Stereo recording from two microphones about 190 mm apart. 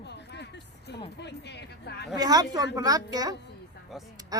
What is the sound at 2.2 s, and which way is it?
Speech, 20° right (ahead or behind).